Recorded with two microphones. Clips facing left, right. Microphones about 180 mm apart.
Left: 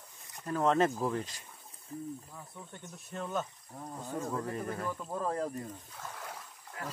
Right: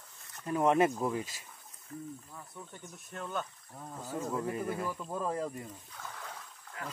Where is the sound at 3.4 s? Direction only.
10° left (ahead or behind).